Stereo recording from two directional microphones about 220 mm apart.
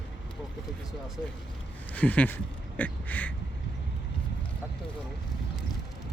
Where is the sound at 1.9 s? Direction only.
5° left (ahead or behind).